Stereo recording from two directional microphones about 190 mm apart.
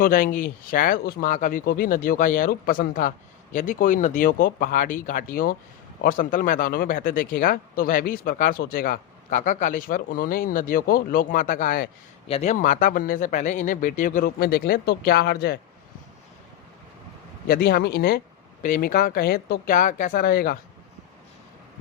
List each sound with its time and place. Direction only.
0.0 s speech: 45° left (ahead or behind)
17.5 s speech: 50° left (ahead or behind)
18.6 s speech: 45° left (ahead or behind)